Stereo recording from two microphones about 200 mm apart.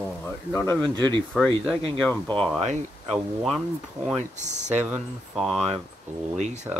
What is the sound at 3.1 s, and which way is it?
Speech, centre (ahead or behind).